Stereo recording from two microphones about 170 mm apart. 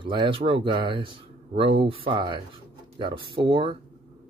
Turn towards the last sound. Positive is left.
turn(degrees=-30)  # may be behind; listen again after turning